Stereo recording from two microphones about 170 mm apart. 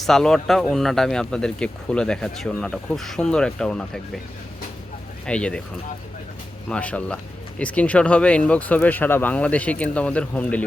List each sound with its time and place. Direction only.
0.0 s speech: centre (ahead or behind)
5.2 s speech: 5° left (ahead or behind)
6.7 s speech: 5° left (ahead or behind)